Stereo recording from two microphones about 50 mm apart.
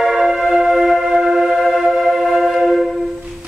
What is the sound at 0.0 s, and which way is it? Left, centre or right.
Music, centre.